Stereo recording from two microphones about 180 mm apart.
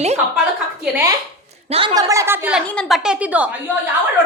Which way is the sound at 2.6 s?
Centre (ahead or behind).